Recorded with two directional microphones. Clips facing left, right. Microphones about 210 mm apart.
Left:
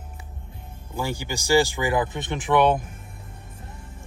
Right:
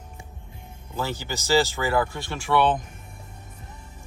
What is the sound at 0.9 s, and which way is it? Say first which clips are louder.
Speech: left 1 dB; 10° left (ahead or behind).